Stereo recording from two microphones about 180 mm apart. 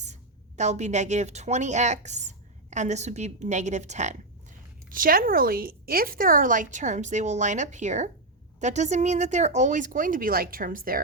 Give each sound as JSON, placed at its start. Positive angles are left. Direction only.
{"t": 0.0, "sound": "a woman's voice", "side_deg": -40}
{"t": 4.9, "sound": "a woman's voice", "side_deg": -50}